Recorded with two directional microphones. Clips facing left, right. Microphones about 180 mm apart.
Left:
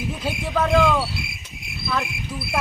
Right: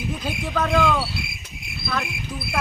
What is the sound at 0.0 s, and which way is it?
Speech, centre (ahead or behind).